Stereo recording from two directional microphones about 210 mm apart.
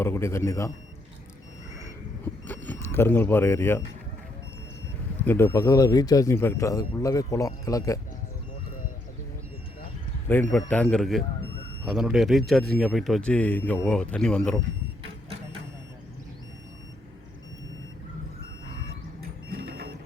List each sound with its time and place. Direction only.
0.0 s speech: 10° left (ahead or behind)
2.6 s speech: 10° left (ahead or behind)
5.2 s speech: 10° left (ahead or behind)
10.2 s a man's voice: 10° left (ahead or behind)
19.5 s printer: 45° right (ahead or behind)